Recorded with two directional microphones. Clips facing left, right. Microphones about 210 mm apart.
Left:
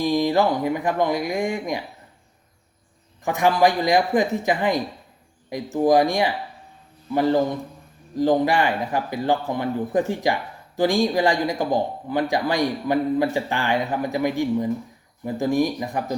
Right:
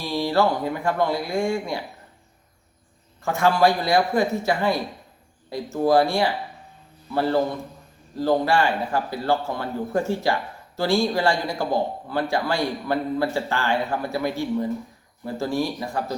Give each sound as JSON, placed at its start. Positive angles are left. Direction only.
{"t": 0.0, "sound": "speech", "side_deg": 15}
{"t": 3.2, "sound": "speech", "side_deg": 15}